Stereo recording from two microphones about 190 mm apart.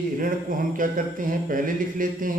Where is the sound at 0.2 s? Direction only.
45° right (ahead or behind).